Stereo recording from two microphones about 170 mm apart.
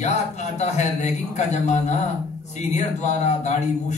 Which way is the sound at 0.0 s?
40° left (ahead or behind).